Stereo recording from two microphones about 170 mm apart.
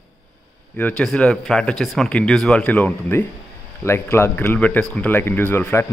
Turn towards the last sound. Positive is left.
turn(degrees=10)  # may be behind; listen again after turning